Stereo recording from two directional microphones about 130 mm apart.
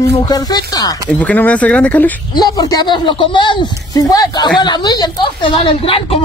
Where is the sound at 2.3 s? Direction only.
30° left (ahead or behind).